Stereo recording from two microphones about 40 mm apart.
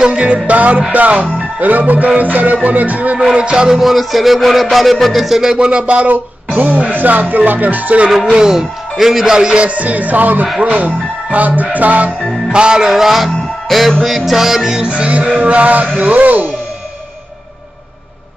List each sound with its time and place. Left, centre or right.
0.0 s music: right
3.3 s music: right
3.8 s a sound: centre
5.7 s music: right
8.3 s music: centre
8.5 s speech: centre
9.6 s music: right
12.5 s music: right
12.9 s music: centre
14.0 s speech: centre
14.8 s music: right